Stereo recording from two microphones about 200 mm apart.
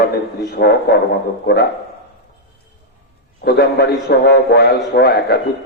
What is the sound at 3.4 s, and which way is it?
A man's voice, 50° left (ahead or behind).